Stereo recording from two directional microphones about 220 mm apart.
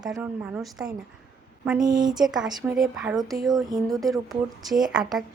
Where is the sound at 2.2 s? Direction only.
Centre (ahead or behind).